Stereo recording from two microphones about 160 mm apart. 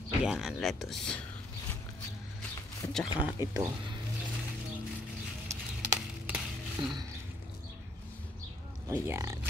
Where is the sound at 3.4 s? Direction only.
15° right (ahead or behind).